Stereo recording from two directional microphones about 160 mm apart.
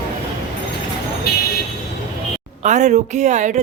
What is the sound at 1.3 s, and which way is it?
Vehicle, 80° left.